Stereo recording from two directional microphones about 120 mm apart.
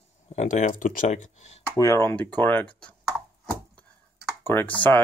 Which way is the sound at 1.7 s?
20° left (ahead or behind).